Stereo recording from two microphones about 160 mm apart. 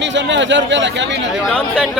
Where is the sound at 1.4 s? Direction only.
5° right (ahead or behind).